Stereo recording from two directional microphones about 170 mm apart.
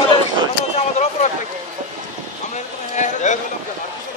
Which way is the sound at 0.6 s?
40° left (ahead or behind).